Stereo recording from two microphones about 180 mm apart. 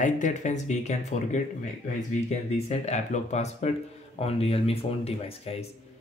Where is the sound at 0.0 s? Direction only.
45° left (ahead or behind).